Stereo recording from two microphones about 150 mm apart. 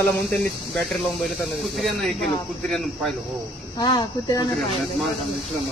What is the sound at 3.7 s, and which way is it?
Speech, 25° left (ahead or behind).